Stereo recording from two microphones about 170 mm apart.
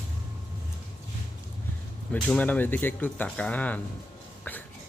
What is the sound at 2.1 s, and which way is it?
Speech, 5° left (ahead or behind).